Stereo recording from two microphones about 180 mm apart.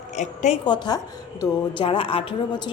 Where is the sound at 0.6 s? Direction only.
25° left (ahead or behind).